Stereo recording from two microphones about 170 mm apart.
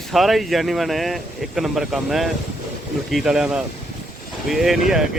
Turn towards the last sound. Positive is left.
turn(degrees=0)  # may be behind; listen again after turning